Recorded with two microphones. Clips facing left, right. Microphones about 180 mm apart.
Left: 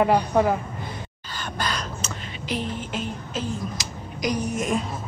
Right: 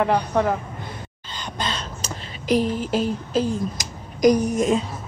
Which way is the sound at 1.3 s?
20° right (ahead or behind).